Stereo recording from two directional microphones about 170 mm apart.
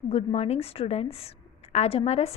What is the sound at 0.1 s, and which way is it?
A woman's voice, 35° left (ahead or behind).